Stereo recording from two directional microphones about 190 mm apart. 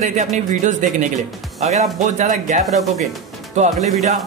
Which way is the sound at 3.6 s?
35° right (ahead or behind).